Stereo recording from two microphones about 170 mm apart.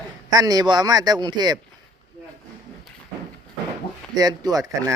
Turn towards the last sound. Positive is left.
turn(degrees=-20)  # may be behind; listen again after turning